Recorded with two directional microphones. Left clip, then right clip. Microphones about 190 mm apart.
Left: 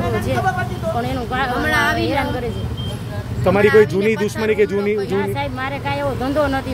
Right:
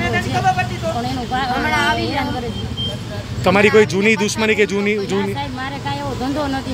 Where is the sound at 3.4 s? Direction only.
5° left (ahead or behind).